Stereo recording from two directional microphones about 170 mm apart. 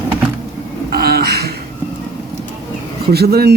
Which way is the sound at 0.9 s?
65° right (ahead or behind).